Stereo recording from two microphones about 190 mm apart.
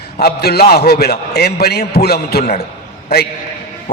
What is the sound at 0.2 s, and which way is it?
A man's voice, 55° left (ahead or behind).